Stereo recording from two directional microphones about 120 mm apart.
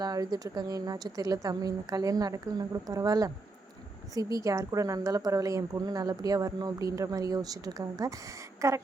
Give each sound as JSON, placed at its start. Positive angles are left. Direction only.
{"t": 0.0, "sound": "a woman's voice", "side_deg": -35}